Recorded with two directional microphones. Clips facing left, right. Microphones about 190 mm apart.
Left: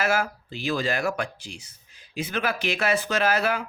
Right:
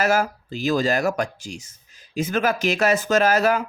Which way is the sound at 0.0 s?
40° right (ahead or behind).